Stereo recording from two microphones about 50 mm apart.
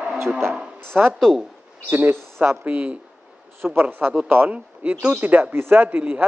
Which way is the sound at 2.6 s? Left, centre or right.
Right.